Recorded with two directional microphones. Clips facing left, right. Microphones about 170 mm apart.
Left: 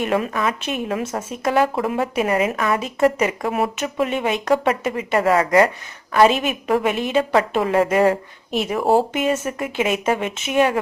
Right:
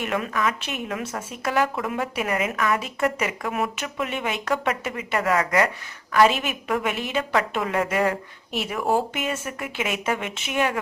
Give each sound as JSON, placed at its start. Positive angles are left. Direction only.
{"t": 0.0, "sound": "speech", "side_deg": 30}